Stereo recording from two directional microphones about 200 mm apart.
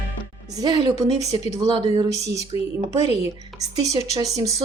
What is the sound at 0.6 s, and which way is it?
A woman's voice, 20° right (ahead or behind).